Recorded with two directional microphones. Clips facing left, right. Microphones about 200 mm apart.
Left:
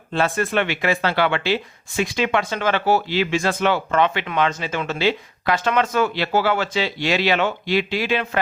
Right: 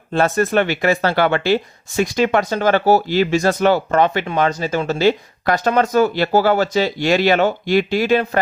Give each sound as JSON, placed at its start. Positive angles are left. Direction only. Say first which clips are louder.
{"t": 0.1, "sound": "speech", "louder": "right 5 dB", "side_deg": -45}